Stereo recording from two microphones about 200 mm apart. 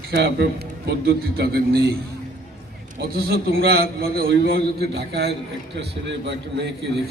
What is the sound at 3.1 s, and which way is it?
A man's voice, 50° right (ahead or behind).